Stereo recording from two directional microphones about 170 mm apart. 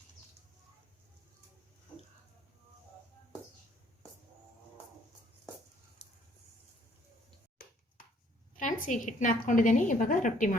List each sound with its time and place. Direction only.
8.5 s a woman's voice: 50° left (ahead or behind)